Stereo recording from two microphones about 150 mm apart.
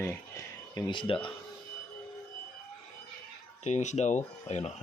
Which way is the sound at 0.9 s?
35° left (ahead or behind).